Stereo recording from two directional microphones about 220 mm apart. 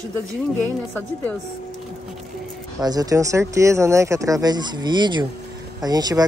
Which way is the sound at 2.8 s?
15° right (ahead or behind).